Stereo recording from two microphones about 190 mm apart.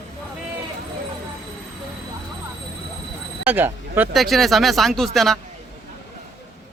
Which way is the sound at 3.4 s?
10° right (ahead or behind).